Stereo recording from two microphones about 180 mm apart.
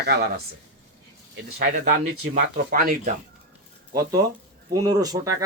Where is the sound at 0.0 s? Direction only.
65° right (ahead or behind).